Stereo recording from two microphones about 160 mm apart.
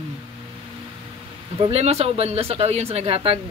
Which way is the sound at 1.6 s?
40° right (ahead or behind).